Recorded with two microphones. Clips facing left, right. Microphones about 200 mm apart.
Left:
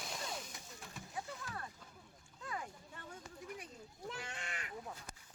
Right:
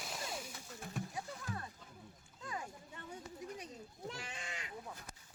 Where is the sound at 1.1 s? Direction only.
20° right (ahead or behind).